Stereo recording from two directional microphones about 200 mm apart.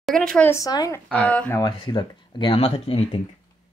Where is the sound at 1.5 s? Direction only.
20° left (ahead or behind).